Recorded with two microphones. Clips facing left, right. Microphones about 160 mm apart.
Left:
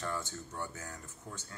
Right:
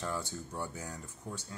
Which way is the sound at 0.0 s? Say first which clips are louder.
Right 1 dB; 10° right (ahead or behind).